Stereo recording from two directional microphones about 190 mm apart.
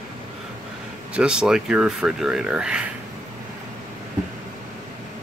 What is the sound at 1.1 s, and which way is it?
Speech, 5° right (ahead or behind).